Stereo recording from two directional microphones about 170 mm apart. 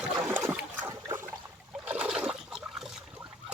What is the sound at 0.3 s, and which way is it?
Splash, 15° right (ahead or behind).